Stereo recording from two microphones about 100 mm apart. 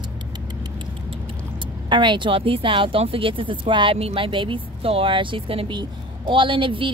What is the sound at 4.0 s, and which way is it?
Speech, 75° right (ahead or behind).